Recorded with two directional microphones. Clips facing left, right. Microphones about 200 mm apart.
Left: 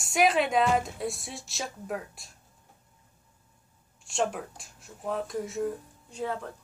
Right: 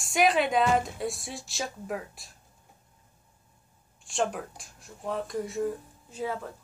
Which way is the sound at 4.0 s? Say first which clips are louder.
Even; centre (ahead or behind).